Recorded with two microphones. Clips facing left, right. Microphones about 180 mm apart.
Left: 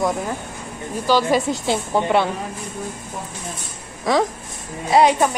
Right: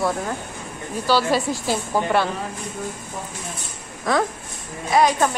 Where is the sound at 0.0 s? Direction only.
15° left (ahead or behind).